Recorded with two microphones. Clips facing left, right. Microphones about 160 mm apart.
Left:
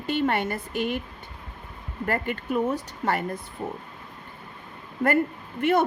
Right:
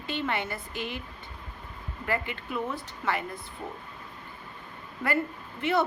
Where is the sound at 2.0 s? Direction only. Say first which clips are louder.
Left 4 dB; 45° left (ahead or behind).